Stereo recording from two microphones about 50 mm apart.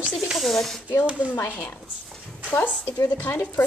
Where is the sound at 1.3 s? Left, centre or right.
Left.